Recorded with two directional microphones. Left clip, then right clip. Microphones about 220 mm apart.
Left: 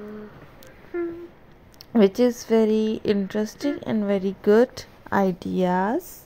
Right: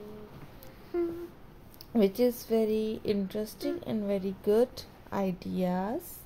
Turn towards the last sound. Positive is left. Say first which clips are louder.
# left 10 dB
turn(degrees=30)  # may be behind; listen again after turning